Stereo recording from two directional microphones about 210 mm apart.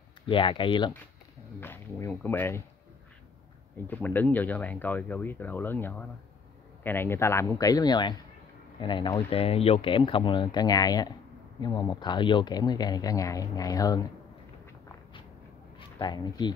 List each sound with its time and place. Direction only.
0.3 s speech: 25° left (ahead or behind)
1.6 s speech: 10° left (ahead or behind)
3.7 s speech: 10° left (ahead or behind)
16.0 s speech: 20° left (ahead or behind)